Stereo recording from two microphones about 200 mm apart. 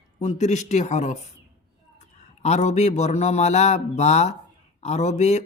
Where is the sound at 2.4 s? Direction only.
35° left (ahead or behind).